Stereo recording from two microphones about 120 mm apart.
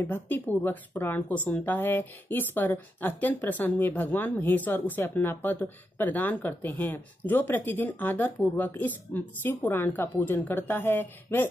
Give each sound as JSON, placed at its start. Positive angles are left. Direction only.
{"t": 0.0, "sound": "speech", "side_deg": 15}